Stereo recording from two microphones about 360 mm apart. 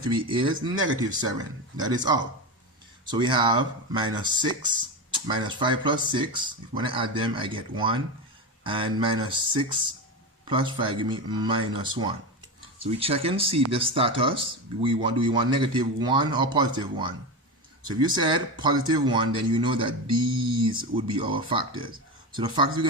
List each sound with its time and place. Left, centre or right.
0.0 s speech: centre
3.1 s speech: centre